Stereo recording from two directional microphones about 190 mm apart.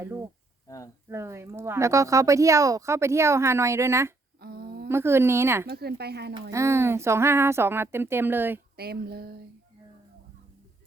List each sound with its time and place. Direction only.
0.0 s speech: 15° right (ahead or behind)
4.4 s humming: 55° right (ahead or behind)
4.9 s speech: 15° right (ahead or behind)
5.6 s a sound: 55° right (ahead or behind)
6.5 s speech: 15° right (ahead or behind)
8.7 s a sound: 55° right (ahead or behind)